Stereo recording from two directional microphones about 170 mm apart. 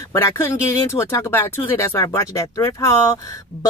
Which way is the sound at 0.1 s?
15° left (ahead or behind).